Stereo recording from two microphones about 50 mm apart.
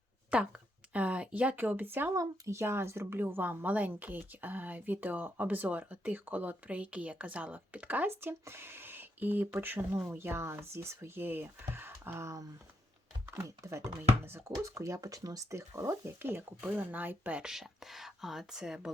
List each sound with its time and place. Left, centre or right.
0.3 s speech: right
0.9 s a sound: right
1.5 s speech: right
2.1 s speech: right
3.2 s a woman's voice: right
8.0 s speech: right
11.2 s speech: right
13.6 s speech: right
14.3 s speech: right
14.6 s speech: right
16.6 s a woman's voice: right
17.4 s speech: centre